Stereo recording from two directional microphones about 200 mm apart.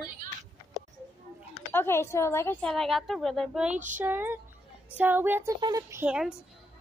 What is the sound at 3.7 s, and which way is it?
Child singing, 40° right (ahead or behind).